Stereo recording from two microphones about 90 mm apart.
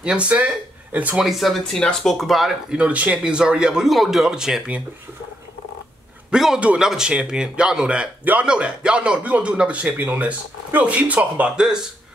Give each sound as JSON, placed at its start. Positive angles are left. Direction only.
{"t": 0.0, "sound": "speech", "side_deg": -10}
{"t": 1.2, "sound": "speech", "side_deg": 0}
{"t": 2.8, "sound": "speech", "side_deg": -15}
{"t": 6.3, "sound": "speech", "side_deg": -5}